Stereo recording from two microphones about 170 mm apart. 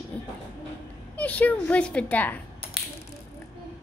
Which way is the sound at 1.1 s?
10° left (ahead or behind).